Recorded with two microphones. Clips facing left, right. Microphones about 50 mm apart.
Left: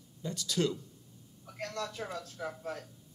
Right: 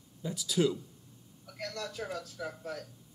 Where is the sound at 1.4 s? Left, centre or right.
Left.